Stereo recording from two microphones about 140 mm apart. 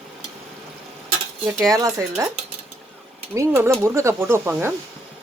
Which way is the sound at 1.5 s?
25° right (ahead or behind).